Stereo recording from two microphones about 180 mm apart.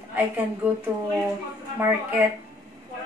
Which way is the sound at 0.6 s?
10° right (ahead or behind).